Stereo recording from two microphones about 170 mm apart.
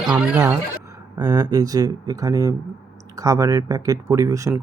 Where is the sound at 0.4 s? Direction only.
20° right (ahead or behind).